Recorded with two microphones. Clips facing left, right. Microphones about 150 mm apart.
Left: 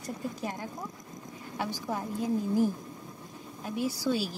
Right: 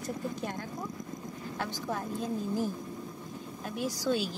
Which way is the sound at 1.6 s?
10° left (ahead or behind).